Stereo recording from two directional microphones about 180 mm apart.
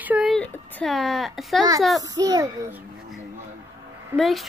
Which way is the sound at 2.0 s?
20° right (ahead or behind).